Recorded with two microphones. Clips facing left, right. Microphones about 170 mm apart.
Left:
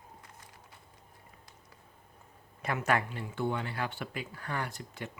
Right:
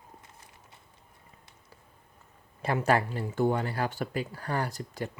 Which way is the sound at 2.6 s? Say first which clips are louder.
Right 5 dB; 30° right (ahead or behind).